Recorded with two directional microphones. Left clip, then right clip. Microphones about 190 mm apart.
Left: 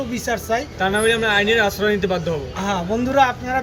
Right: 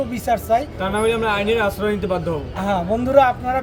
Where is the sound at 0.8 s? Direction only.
20° right (ahead or behind).